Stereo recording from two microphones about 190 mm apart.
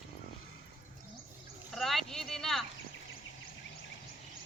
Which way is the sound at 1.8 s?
Centre (ahead or behind).